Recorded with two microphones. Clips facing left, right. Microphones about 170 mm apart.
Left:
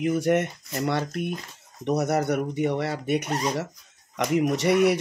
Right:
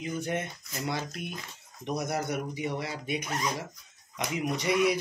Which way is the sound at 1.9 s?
65° left (ahead or behind).